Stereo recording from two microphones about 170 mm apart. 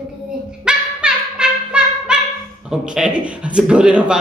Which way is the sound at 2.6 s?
5° right (ahead or behind).